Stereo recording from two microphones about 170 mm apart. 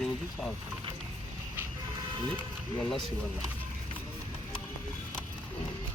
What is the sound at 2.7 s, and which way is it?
Speech, 5° left (ahead or behind).